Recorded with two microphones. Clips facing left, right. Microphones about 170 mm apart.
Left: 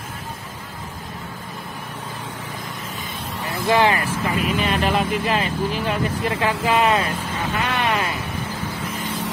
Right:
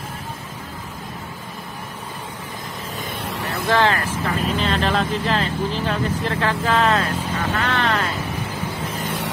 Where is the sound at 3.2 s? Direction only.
70° right (ahead or behind).